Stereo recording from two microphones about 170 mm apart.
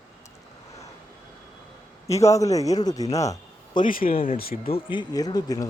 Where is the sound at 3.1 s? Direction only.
20° left (ahead or behind).